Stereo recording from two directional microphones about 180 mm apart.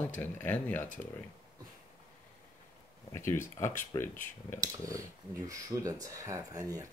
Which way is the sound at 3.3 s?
15° left (ahead or behind).